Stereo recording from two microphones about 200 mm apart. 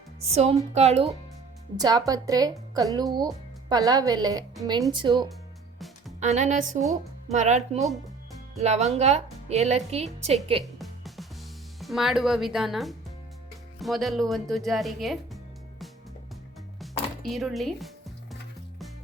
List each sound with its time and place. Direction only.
0.3 s a woman's voice: 30° right (ahead or behind)
1.7 s speech: 20° right (ahead or behind)
6.1 s a woman's voice: 35° right (ahead or behind)
10.6 s music: centre (ahead or behind)
11.8 s speech: centre (ahead or behind)
16.8 s music: centre (ahead or behind)